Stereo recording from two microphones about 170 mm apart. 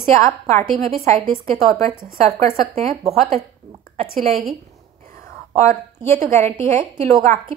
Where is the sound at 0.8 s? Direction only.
40° right (ahead or behind).